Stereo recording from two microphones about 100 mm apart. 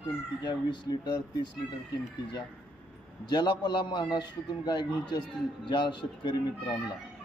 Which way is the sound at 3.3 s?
45° left (ahead or behind).